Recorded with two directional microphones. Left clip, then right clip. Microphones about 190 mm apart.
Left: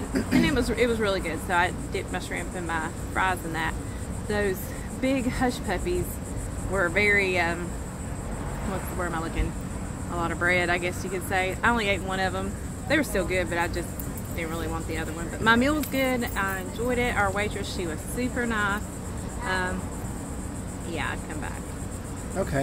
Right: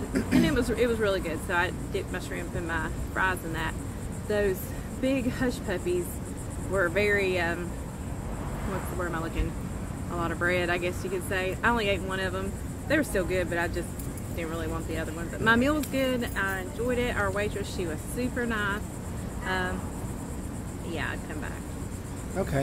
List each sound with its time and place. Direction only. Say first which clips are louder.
0.1 s a sound: left 1 dB; 20° right (ahead or behind)
0.5 s speech: left 2 dB; 10° left (ahead or behind)
9.0 s speech: left 3 dB; 10° left (ahead or behind)
20.9 s speech: left 2 dB; 10° left (ahead or behind)